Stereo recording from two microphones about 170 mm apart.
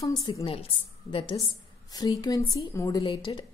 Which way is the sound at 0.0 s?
20° left (ahead or behind).